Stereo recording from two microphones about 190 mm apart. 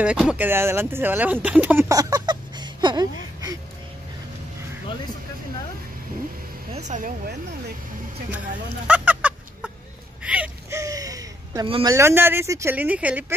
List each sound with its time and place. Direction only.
0.0 s speech: 5° right (ahead or behind)
6.7 s speech: 40° right (ahead or behind)
8.8 s fowl: 10° right (ahead or behind)
10.2 s a sound: 5° right (ahead or behind); by 11.9 s 25° right (ahead or behind)
11.9 s speech: 15° right (ahead or behind)